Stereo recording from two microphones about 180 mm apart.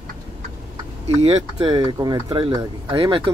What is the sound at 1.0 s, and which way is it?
Speech, 35° right (ahead or behind).